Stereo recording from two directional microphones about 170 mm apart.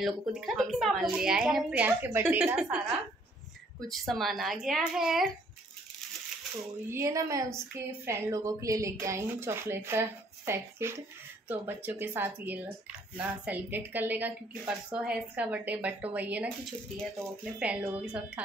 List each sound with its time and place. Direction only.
0.0 s a woman's voice: centre (ahead or behind)
3.8 s a woman's voice: centre (ahead or behind)
6.9 s a woman's voice: 20° right (ahead or behind)
17.6 s a woman's voice: 5° right (ahead or behind)